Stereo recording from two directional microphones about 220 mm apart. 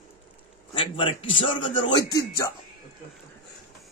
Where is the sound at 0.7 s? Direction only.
25° left (ahead or behind).